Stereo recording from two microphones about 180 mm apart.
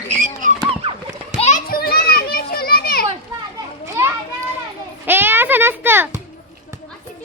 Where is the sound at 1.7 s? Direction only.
60° left (ahead or behind).